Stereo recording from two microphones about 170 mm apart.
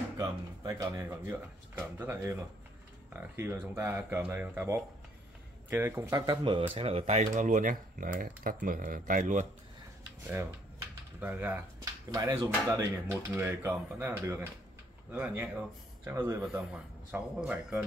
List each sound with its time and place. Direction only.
0.2 s a man's voice: 20° right (ahead or behind); by 9.5 s 50° right (ahead or behind)
11.1 s speech: 10° right (ahead or behind)
13.1 s a man's voice: 10° right (ahead or behind)